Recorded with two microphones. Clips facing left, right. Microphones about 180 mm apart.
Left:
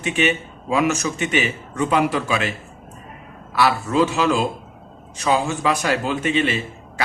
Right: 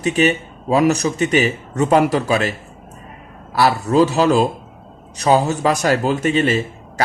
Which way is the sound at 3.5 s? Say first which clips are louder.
Right 4 dB; 40° right (ahead or behind).